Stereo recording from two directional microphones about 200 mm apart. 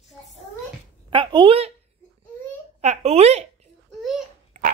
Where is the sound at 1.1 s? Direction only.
25° right (ahead or behind).